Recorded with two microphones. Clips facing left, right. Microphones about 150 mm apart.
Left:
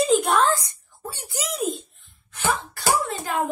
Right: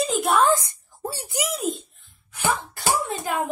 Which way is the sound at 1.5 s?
Centre (ahead or behind).